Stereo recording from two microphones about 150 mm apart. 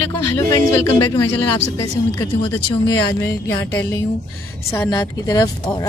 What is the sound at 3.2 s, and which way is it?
A woman's voice, 20° left (ahead or behind).